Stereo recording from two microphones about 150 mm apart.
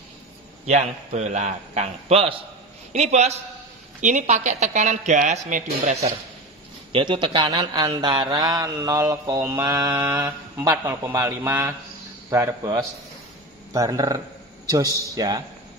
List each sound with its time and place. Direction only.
0.7 s speech: 50° right (ahead or behind)
6.9 s a man's voice: 35° right (ahead or behind)